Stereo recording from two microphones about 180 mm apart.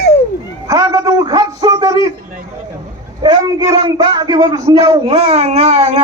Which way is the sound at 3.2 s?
20° right (ahead or behind).